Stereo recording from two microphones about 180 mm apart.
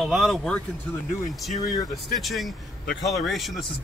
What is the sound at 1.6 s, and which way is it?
Speech, 20° left (ahead or behind).